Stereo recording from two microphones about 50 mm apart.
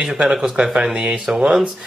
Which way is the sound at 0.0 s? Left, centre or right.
Centre.